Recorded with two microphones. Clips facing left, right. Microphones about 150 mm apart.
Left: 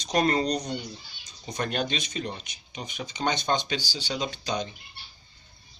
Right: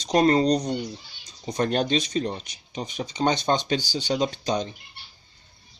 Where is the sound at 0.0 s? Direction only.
30° right (ahead or behind).